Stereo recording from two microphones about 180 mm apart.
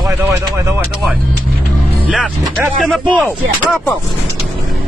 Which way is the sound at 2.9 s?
5° left (ahead or behind).